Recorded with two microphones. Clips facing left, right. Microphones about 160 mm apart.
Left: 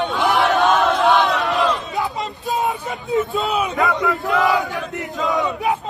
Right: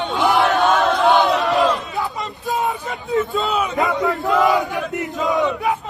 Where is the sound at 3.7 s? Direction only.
20° right (ahead or behind).